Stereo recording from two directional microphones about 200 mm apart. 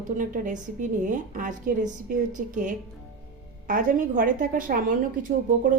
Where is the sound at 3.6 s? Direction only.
40° right (ahead or behind).